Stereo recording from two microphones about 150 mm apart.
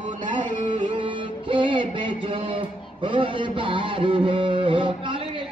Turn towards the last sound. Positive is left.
turn(degrees=-30)  # may be behind; listen again after turning